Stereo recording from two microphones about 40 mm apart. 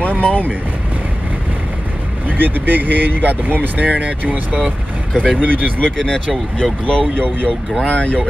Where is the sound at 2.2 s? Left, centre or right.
Right.